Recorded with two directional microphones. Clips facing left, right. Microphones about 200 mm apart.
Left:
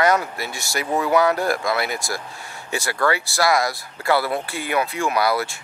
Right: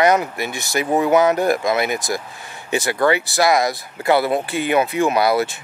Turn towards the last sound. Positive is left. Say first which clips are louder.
# right 4 dB
turn(degrees=-20)  # may be behind; listen again after turning